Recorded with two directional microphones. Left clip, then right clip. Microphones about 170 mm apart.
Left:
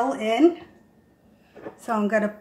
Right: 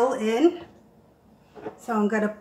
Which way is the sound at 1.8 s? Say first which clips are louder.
Left 2 dB; 55° left (ahead or behind).